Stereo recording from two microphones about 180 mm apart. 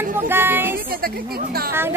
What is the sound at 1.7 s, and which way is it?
Speech, 15° right (ahead or behind).